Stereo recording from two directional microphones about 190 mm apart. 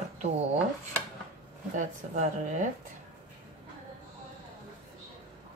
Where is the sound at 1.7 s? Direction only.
40° right (ahead or behind).